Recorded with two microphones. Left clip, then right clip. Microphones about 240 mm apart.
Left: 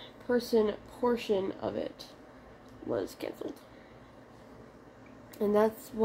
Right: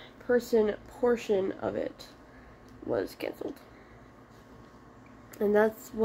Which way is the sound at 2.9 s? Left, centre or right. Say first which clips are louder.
Right 3 dB; centre.